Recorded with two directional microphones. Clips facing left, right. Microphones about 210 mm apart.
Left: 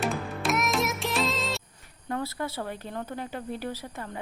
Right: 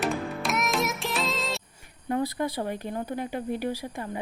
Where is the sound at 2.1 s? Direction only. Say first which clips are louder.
Right 4 dB; 15° right (ahead or behind).